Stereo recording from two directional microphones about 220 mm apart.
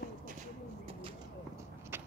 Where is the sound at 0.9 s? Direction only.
25° right (ahead or behind).